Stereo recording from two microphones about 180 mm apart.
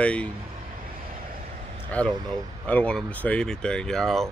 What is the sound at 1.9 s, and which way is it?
Speech, 10° left (ahead or behind).